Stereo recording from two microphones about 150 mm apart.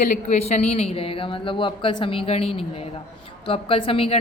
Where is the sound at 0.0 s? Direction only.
50° left (ahead or behind).